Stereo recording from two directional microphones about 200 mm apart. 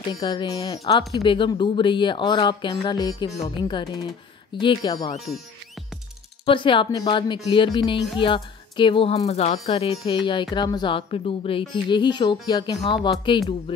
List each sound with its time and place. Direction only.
0.2 s speech: 25° left (ahead or behind)
6.4 s speech: 25° left (ahead or behind)